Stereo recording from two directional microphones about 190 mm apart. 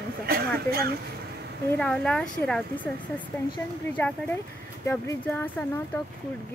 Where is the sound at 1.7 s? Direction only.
5° left (ahead or behind).